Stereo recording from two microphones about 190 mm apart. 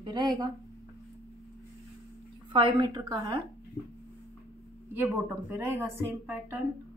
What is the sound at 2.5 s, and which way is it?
Speech, 25° right (ahead or behind).